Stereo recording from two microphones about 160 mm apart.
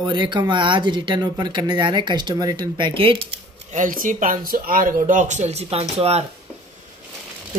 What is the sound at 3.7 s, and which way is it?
Speech, 55° right (ahead or behind).